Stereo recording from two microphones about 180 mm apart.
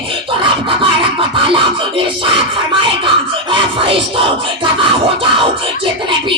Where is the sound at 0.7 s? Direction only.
30° right (ahead or behind).